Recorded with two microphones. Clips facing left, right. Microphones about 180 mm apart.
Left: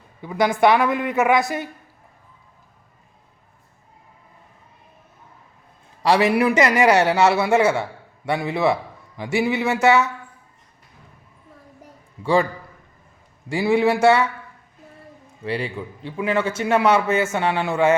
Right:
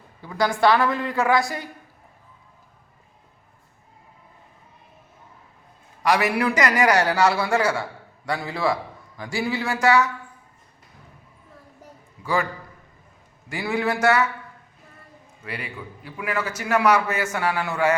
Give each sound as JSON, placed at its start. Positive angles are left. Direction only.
{"t": 0.2, "sound": "a man's voice", "side_deg": 20}
{"t": 6.0, "sound": "a man's voice", "side_deg": 30}
{"t": 12.2, "sound": "a man's voice", "side_deg": 30}
{"t": 13.5, "sound": "a man's voice", "side_deg": 25}
{"t": 15.4, "sound": "a man's voice", "side_deg": 30}